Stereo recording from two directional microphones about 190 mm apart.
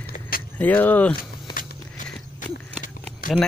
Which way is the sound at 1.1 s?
50° left (ahead or behind).